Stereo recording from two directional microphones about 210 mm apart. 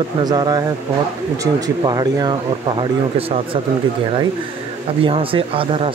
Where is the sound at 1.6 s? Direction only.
20° right (ahead or behind).